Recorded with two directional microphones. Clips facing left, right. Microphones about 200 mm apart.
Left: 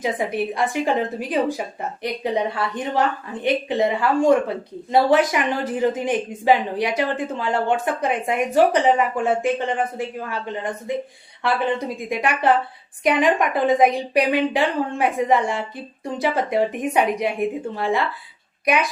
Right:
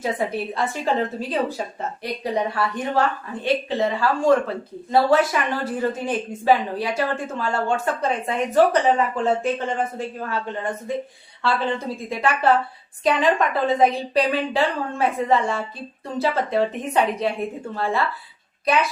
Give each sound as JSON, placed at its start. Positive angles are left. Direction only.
{"t": 0.0, "sound": "a woman's voice", "side_deg": 15}